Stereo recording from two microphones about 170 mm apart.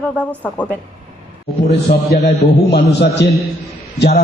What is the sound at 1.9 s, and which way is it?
Speech, 55° left (ahead or behind).